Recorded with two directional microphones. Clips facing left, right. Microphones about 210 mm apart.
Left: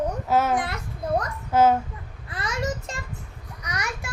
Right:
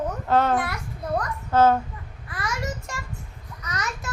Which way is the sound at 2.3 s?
20° left (ahead or behind).